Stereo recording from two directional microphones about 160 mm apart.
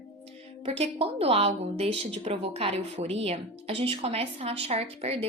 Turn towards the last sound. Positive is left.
turn(degrees=-40)  # may be behind; listen again after turning